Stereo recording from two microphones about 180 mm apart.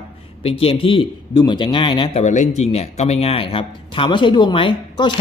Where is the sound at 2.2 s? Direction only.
40° left (ahead or behind).